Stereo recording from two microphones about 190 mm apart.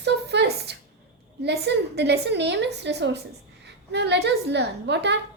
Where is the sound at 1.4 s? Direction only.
60° right (ahead or behind).